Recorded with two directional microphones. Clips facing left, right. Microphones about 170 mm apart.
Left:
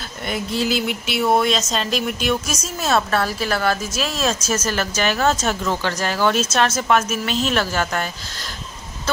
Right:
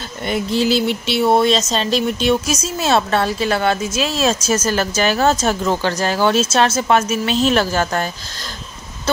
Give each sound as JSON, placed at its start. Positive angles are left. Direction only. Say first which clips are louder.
{"t": 0.5, "sound": "speech", "louder": "right 5 dB", "side_deg": -30}